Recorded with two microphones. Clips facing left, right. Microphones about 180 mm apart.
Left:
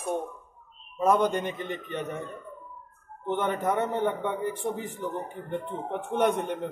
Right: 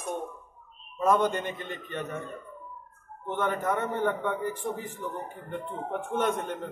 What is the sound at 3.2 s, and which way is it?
A man's voice, 20° left (ahead or behind).